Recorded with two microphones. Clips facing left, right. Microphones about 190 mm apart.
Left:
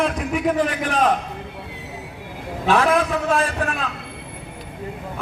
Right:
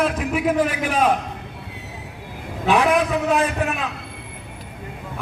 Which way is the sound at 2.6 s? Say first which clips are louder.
Even; 15° right (ahead or behind).